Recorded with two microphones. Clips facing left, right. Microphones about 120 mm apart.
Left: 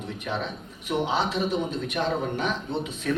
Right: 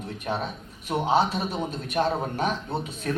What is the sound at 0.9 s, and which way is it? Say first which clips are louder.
A man's voice: right 3 dB; 45° right (ahead or behind).